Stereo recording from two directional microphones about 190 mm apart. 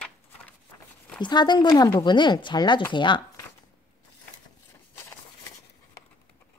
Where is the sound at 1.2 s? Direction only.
25° left (ahead or behind).